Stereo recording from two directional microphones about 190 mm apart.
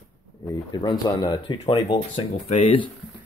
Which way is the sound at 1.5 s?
30° left (ahead or behind).